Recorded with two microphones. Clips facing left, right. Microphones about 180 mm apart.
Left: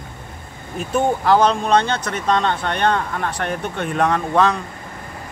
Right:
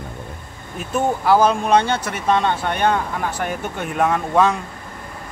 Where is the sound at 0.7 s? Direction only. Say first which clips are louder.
Left 2 dB; 5° right (ahead or behind).